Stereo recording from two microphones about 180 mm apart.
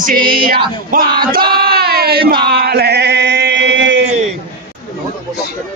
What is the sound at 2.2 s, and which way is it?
Male singing, 60° right (ahead or behind).